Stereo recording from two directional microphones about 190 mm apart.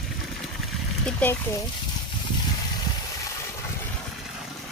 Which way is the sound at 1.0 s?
10° left (ahead or behind).